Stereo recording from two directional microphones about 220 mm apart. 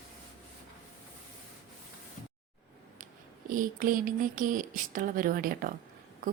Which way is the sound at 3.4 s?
40° right (ahead or behind).